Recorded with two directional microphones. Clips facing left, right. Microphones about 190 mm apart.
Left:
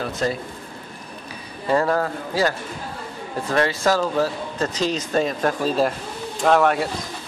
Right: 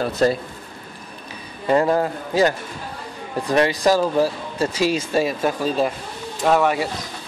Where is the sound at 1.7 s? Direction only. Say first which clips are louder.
Right 2 dB; 20° right (ahead or behind).